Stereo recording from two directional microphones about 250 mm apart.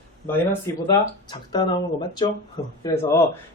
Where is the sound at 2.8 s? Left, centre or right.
Centre.